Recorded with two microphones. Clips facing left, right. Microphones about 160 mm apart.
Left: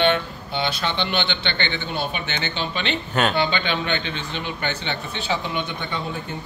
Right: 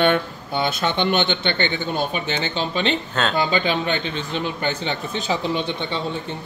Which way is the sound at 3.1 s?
15° left (ahead or behind).